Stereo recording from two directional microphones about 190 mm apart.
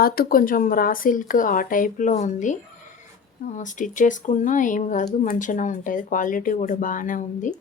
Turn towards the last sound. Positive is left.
turn(degrees=45)  # may be behind; listen again after turning